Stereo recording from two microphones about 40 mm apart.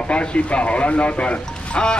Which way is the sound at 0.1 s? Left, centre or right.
Left.